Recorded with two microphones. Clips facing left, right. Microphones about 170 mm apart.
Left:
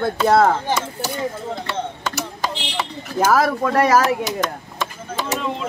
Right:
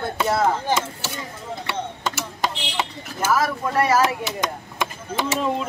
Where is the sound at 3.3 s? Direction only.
65° left (ahead or behind).